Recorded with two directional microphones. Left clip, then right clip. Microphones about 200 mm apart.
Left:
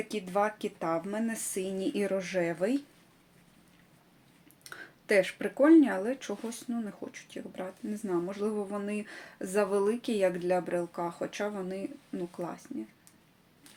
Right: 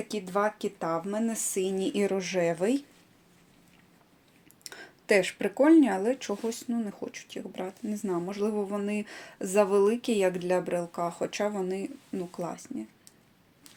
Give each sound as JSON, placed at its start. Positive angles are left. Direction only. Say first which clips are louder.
{"t": 0.1, "sound": "speech", "louder": "right 2 dB", "side_deg": -25}
{"t": 4.6, "sound": "speech", "louder": "right 3 dB", "side_deg": -25}